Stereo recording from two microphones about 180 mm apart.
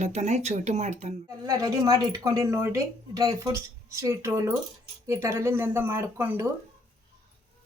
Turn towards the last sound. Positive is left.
turn(degrees=-10)  # may be behind; listen again after turning